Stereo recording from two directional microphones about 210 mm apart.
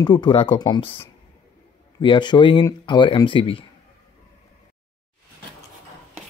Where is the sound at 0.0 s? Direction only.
20° left (ahead or behind).